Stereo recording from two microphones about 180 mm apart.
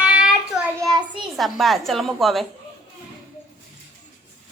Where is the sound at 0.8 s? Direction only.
20° right (ahead or behind).